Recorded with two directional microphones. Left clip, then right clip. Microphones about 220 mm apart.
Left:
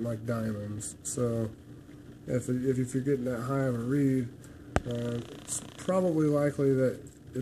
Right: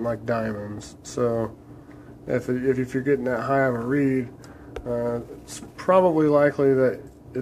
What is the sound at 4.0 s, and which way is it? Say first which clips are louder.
Speech: right 4 dB; 45° right (ahead or behind).